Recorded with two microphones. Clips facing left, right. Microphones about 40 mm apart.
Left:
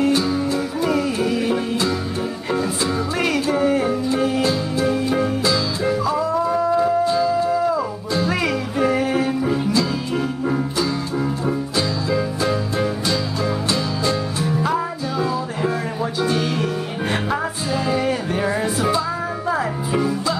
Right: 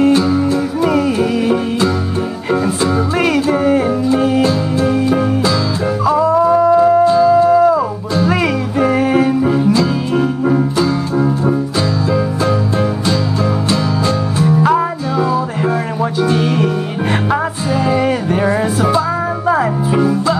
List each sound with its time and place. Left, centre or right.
0.2 s music: right
14.6 s music: right
16.2 s music: right